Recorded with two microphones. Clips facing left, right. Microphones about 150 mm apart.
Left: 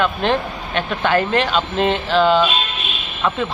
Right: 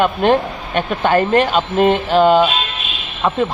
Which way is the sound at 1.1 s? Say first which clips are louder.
Right 4 dB; 45° right (ahead or behind).